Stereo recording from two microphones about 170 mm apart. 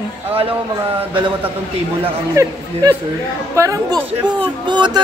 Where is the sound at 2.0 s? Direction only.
20° right (ahead or behind).